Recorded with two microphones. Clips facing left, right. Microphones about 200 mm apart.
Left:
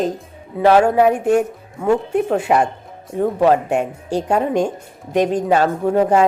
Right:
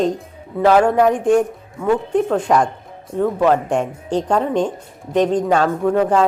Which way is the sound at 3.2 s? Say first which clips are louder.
Left 1 dB; 30° left (ahead or behind).